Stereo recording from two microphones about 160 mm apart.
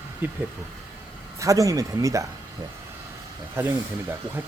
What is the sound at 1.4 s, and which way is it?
Speech, 20° right (ahead or behind).